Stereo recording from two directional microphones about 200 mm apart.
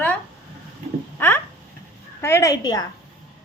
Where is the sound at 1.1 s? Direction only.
10° left (ahead or behind).